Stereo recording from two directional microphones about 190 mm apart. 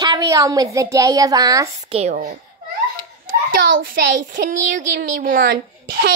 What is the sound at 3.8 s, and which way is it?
A woman's voice, 45° right (ahead or behind).